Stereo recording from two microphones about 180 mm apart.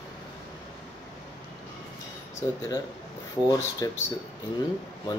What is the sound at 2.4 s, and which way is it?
Speech, 20° left (ahead or behind).